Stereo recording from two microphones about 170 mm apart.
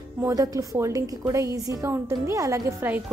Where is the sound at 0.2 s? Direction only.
20° right (ahead or behind).